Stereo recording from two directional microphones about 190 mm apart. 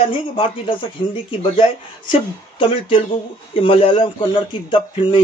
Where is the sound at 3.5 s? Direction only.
30° left (ahead or behind).